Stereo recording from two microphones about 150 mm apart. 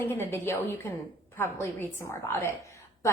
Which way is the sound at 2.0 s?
15° left (ahead or behind).